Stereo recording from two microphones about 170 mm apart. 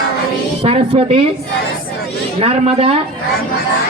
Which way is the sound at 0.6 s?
35° right (ahead or behind).